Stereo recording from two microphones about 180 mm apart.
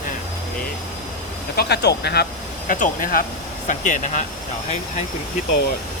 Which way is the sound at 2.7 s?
50° left (ahead or behind).